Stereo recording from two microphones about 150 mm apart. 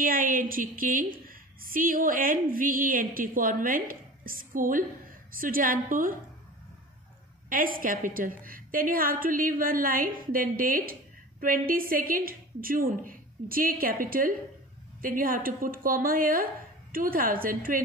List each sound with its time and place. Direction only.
0.0 s a woman's voice: 70° right (ahead or behind)
7.4 s a woman's voice: 70° right (ahead or behind)